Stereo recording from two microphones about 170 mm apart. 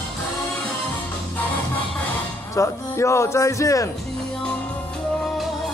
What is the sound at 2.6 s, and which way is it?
A man's voice, 15° left (ahead or behind).